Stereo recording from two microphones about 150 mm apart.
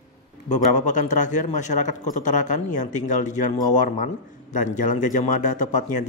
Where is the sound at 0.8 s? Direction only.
55° left (ahead or behind).